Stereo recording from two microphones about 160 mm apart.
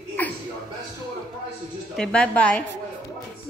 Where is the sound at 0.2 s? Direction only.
10° left (ahead or behind).